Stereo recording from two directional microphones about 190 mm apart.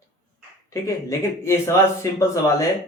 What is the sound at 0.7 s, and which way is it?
Speech, 15° left (ahead or behind).